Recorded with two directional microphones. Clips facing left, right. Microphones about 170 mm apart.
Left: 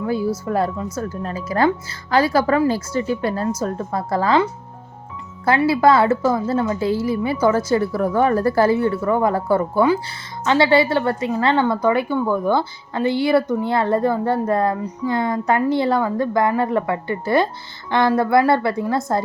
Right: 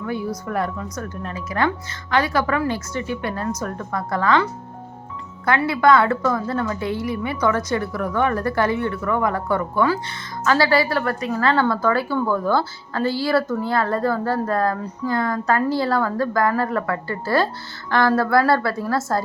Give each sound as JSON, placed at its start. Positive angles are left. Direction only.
{"t": 0.0, "sound": "a woman's voice", "side_deg": 30}
{"t": 5.5, "sound": "a woman's voice", "side_deg": 30}